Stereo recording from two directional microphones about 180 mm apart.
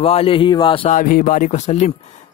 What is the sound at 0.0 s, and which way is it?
Speech, 35° left (ahead or behind).